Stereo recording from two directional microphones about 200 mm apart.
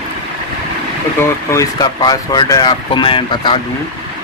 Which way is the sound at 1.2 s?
15° left (ahead or behind).